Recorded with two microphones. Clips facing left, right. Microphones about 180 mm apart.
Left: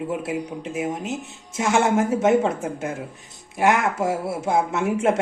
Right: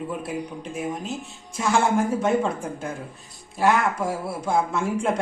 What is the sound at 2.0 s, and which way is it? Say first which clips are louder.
Speech: left 2 dB; 20° left (ahead or behind).